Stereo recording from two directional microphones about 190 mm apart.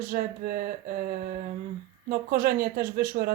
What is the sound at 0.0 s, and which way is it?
Speech, 50° right (ahead or behind).